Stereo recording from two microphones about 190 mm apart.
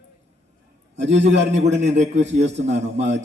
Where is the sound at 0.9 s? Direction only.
70° right (ahead or behind).